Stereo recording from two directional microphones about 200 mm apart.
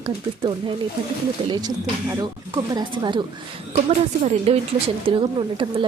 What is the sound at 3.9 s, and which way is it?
A woman's voice, 35° right (ahead or behind).